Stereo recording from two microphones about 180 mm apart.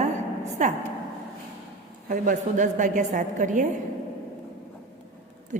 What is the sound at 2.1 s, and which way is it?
A woman's voice, 45° right (ahead or behind).